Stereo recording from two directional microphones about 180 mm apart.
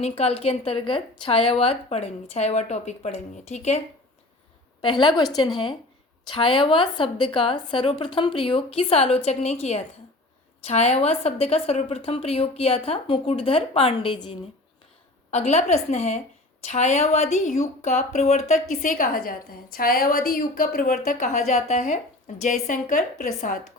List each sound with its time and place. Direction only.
0.0 s speech: 35° left (ahead or behind)
4.8 s a woman's voice: 25° left (ahead or behind)
6.2 s a woman's voice: 30° left (ahead or behind); by 23.6 s 45° left (ahead or behind)